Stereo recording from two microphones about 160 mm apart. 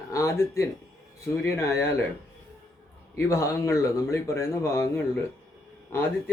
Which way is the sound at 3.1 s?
20° left (ahead or behind).